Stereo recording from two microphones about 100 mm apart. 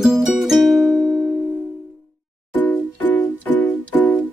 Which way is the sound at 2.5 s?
15° left (ahead or behind).